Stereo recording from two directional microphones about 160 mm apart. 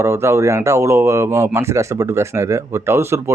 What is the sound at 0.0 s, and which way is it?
Speech, 15° right (ahead or behind).